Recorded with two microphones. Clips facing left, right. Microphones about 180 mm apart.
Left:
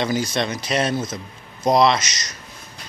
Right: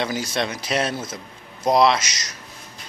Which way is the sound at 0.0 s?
5° right (ahead or behind).